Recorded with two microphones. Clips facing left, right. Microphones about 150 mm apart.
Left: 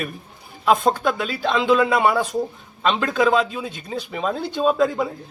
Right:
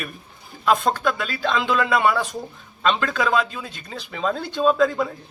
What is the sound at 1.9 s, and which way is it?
Speech, 20° left (ahead or behind).